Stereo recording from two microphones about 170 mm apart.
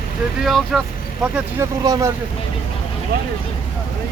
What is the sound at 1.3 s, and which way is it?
Speech, 20° right (ahead or behind).